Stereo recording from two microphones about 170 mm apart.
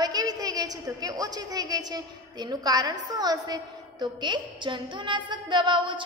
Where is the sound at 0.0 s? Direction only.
20° right (ahead or behind).